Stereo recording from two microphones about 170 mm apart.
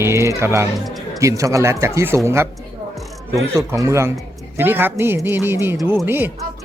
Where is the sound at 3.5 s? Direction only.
15° right (ahead or behind).